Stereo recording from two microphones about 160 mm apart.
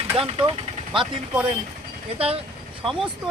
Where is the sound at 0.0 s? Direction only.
35° right (ahead or behind).